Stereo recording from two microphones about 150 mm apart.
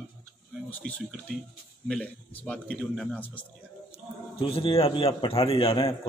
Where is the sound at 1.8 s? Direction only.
5° left (ahead or behind).